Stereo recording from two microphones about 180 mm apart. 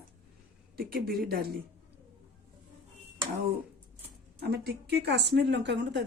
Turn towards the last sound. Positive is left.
turn(degrees=-75)  # may be behind; listen again after turning